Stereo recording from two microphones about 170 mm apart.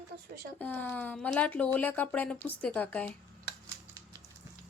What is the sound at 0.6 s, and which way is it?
Speech, 10° left (ahead or behind).